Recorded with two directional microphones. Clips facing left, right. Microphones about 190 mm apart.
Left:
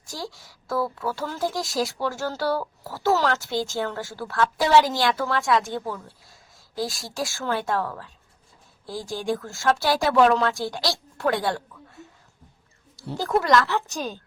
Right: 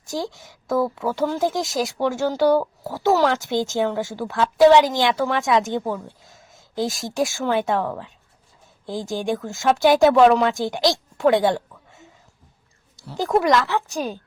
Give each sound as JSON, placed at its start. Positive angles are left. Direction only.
{"t": 0.0, "sound": "speech", "side_deg": -20}
{"t": 13.1, "sound": "speech", "side_deg": -20}